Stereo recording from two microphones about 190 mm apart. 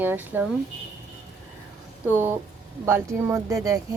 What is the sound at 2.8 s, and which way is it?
Speech, 15° right (ahead or behind).